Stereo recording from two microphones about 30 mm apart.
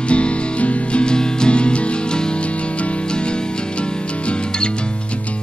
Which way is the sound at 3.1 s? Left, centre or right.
Left.